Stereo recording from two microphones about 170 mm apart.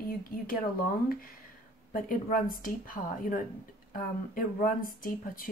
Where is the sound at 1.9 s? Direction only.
55° left (ahead or behind).